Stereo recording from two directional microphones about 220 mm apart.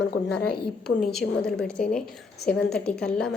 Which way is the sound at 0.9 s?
Centre (ahead or behind).